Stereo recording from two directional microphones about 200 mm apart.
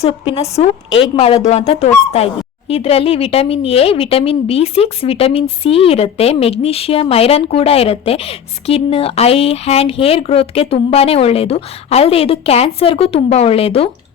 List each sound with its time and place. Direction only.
0.0 s speech: 30° left (ahead or behind)